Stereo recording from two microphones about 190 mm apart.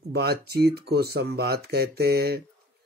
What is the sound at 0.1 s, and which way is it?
Speech, 55° right (ahead or behind).